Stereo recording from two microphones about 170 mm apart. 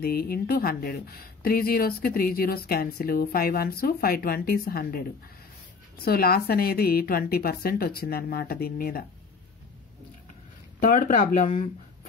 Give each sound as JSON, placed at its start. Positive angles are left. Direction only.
{"t": 0.0, "sound": "speech", "side_deg": 60}
{"t": 10.8, "sound": "speech", "side_deg": 55}
{"t": 11.5, "sound": "a sound", "side_deg": 45}